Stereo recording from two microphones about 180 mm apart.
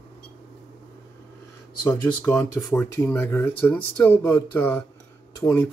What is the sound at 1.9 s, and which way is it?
Speech, 5° left (ahead or behind).